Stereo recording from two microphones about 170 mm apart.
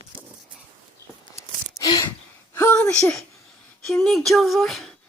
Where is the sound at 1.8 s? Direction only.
25° left (ahead or behind).